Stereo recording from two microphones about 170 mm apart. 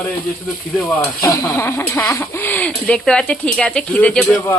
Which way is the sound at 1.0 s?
20° left (ahead or behind).